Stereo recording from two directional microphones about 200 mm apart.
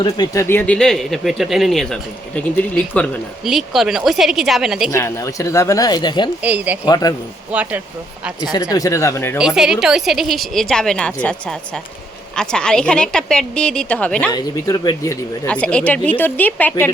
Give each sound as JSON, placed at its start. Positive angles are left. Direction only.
{"t": 0.0, "sound": "speech", "side_deg": 15}
{"t": 4.9, "sound": "speech", "side_deg": 15}
{"t": 6.4, "sound": "speech", "side_deg": -5}
{"t": 6.8, "sound": "speech", "side_deg": 20}
{"t": 7.5, "sound": "speech", "side_deg": -5}
{"t": 8.7, "sound": "speech", "side_deg": 15}
{"t": 9.4, "sound": "speech", "side_deg": -5}
{"t": 14.3, "sound": "speech", "side_deg": 20}